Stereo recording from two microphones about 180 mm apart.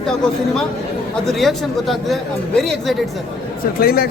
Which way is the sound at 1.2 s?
Centre (ahead or behind).